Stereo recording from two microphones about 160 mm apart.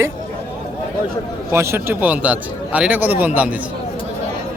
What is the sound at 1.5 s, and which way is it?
A man's voice, 15° right (ahead or behind).